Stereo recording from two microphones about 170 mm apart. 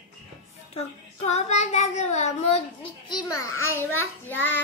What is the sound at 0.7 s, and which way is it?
Child singing, 40° left (ahead or behind).